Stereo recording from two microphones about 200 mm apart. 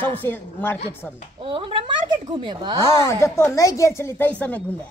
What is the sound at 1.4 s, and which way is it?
A woman's voice, 25° right (ahead or behind).